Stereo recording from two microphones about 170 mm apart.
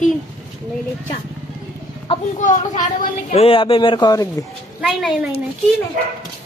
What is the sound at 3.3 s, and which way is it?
Speech, 35° left (ahead or behind).